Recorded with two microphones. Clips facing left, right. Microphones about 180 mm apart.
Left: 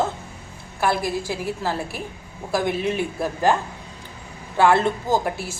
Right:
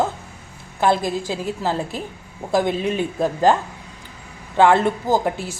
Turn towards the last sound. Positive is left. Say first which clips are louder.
# right 3 dB
turn(degrees=-15)  # may be behind; listen again after turning